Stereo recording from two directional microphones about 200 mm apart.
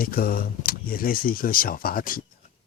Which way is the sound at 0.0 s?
45° left (ahead or behind).